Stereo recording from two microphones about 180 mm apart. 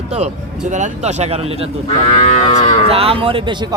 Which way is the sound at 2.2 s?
40° left (ahead or behind).